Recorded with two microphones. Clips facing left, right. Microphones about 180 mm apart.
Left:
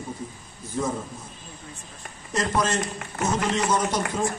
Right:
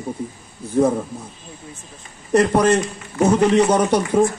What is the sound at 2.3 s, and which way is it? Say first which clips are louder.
A man's voice: right 10 dB; 60° right (ahead or behind).